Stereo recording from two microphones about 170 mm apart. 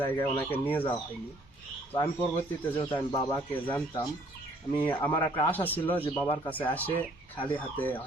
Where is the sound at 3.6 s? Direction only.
10° left (ahead or behind).